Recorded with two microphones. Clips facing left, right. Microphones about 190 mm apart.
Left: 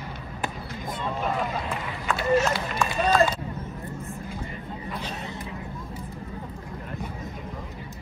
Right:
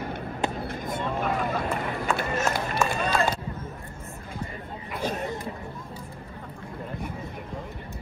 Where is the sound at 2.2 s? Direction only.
50° right (ahead or behind).